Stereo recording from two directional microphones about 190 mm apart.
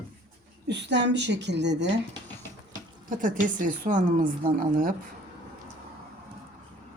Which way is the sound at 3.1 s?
45° right (ahead or behind).